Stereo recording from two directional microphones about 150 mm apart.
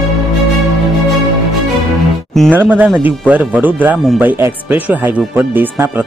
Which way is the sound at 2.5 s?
10° right (ahead or behind).